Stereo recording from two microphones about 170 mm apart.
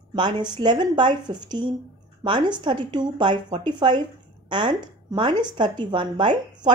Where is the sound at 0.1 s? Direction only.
25° right (ahead or behind).